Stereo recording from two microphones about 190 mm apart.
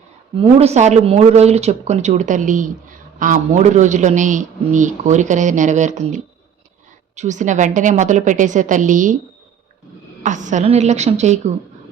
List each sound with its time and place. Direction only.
0.3 s a man's voice: 30° right (ahead or behind)
10.2 s a man's voice: 40° right (ahead or behind)